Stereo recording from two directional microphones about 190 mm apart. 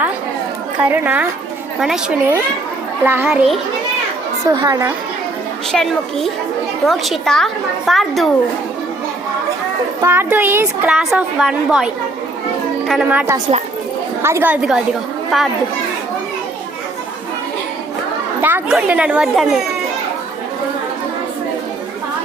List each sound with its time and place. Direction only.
0.8 s a woman's voice: 10° right (ahead or behind)
4.4 s a woman's voice: 20° right (ahead or behind)
5.7 s a woman's voice: centre (ahead or behind)
10.0 s a woman's voice: 10° right (ahead or behind)
12.9 s a woman's voice: 5° right (ahead or behind)
18.4 s a woman's voice: 10° right (ahead or behind)